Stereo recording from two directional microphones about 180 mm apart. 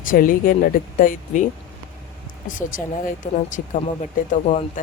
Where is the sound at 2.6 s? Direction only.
50° left (ahead or behind).